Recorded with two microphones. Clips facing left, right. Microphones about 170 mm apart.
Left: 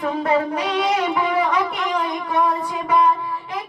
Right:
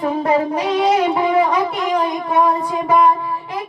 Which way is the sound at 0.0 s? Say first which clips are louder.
Right 3 dB; 30° right (ahead or behind).